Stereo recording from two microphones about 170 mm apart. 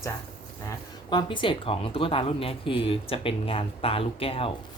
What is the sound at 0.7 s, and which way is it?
Speech, 25° left (ahead or behind).